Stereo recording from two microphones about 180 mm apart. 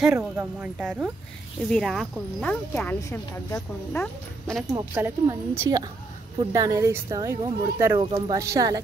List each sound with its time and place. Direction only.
0.0 s a woman's voice: 5° right (ahead or behind)
4.9 s a woman's voice: 10° right (ahead or behind)
8.0 s speech: 25° right (ahead or behind)